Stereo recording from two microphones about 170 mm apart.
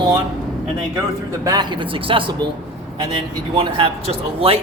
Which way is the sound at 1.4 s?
25° right (ahead or behind).